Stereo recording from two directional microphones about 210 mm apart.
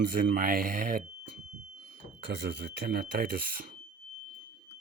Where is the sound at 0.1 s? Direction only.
45° right (ahead or behind).